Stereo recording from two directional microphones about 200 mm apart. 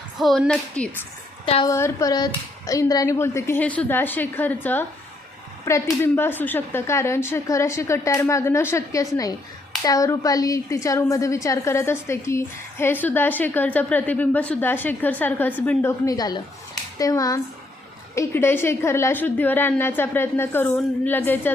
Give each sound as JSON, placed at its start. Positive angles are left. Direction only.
{"t": 0.2, "sound": "a woman's voice", "side_deg": 0}
{"t": 1.5, "sound": "a woman's voice", "side_deg": 30}
{"t": 1.7, "sound": "a woman's voice", "side_deg": 15}